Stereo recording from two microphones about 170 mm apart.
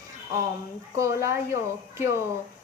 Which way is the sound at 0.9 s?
15° right (ahead or behind).